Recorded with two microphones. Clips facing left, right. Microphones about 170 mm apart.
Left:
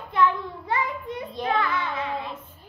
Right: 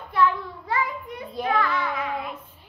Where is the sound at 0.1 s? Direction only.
20° left (ahead or behind).